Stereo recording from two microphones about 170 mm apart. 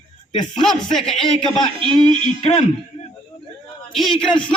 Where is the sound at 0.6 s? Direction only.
Centre (ahead or behind).